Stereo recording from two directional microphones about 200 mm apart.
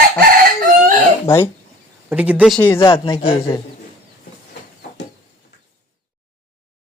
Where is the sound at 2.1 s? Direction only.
10° right (ahead or behind).